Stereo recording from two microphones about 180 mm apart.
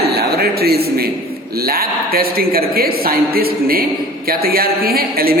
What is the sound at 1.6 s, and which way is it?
Speech, 55° right (ahead or behind).